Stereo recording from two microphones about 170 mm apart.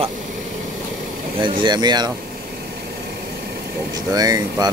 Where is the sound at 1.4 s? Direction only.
25° right (ahead or behind).